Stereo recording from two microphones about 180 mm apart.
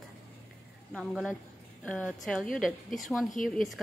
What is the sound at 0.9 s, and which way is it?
A woman's voice, 5° left (ahead or behind).